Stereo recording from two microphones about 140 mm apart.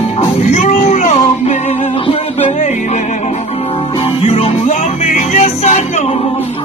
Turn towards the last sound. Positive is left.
turn(degrees=55)  # may be behind; listen again after turning